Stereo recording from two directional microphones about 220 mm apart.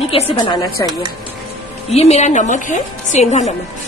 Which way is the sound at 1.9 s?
30° left (ahead or behind).